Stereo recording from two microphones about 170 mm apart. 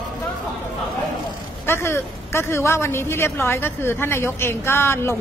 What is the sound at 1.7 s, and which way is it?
A woman's voice, 15° left (ahead or behind).